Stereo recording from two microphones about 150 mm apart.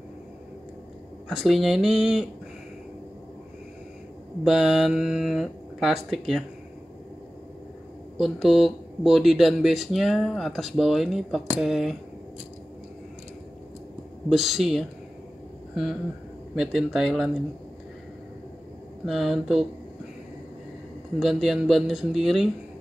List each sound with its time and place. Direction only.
1.3 s speech: centre (ahead or behind)
4.5 s speech: 5° right (ahead or behind)
8.2 s speech: centre (ahead or behind)
14.3 s speech: centre (ahead or behind)
19.0 s speech: centre (ahead or behind)
21.2 s speech: centre (ahead or behind)